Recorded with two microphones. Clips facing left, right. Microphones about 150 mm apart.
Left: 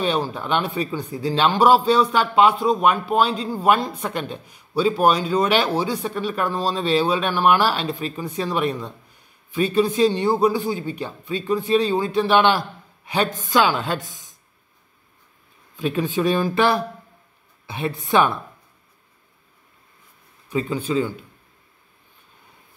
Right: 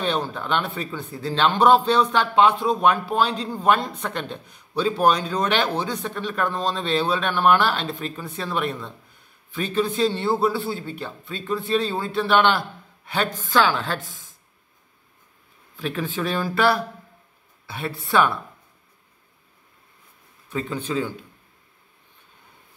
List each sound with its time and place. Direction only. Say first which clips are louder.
0.0 s a man's voice: left 2 dB; 10° left (ahead or behind)
15.7 s a man's voice: left 5 dB; 15° left (ahead or behind)
20.4 s a man's voice: left 4 dB; 10° left (ahead or behind)